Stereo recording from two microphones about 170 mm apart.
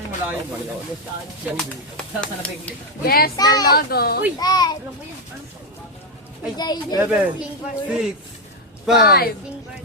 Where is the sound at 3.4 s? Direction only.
25° left (ahead or behind).